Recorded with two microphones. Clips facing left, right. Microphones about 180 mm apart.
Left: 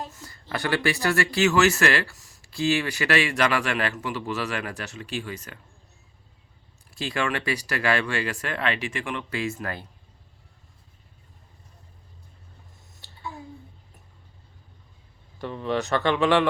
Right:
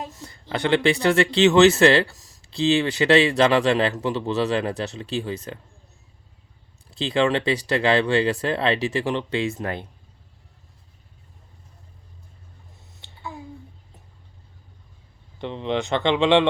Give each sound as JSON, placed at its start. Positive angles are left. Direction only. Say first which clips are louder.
{"t": 0.2, "sound": "speech", "louder": "right 6 dB", "side_deg": -20}
{"t": 6.9, "sound": "speech", "louder": "right 7 dB", "side_deg": -25}
{"t": 15.4, "sound": "speech", "louder": "right 2 dB", "side_deg": -20}